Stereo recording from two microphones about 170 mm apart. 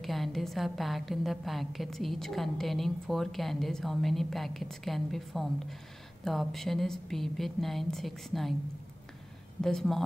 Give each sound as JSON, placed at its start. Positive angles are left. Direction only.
{"t": 0.0, "sound": "a woman's voice", "side_deg": 0}
{"t": 9.6, "sound": "a woman's voice", "side_deg": 5}